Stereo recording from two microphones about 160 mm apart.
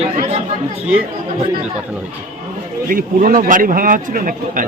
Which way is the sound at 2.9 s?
60° right (ahead or behind).